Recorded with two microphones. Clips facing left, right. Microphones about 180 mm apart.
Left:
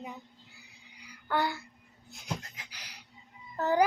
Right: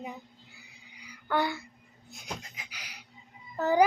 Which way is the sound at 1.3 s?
15° right (ahead or behind).